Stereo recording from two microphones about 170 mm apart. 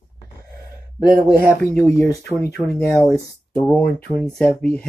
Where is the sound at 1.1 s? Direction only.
15° right (ahead or behind).